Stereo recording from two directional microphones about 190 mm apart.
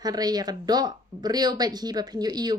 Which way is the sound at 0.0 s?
20° right (ahead or behind).